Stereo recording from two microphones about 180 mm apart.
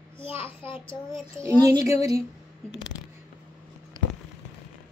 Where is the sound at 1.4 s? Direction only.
20° right (ahead or behind).